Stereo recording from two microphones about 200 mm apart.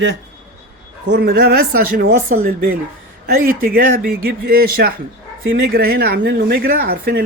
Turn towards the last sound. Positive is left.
turn(degrees=-50)  # may be behind; listen again after turning